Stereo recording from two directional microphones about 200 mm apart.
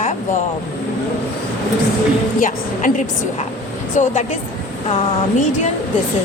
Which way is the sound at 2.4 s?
40° left (ahead or behind).